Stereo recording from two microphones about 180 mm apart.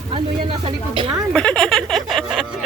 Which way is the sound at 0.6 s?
30° right (ahead or behind).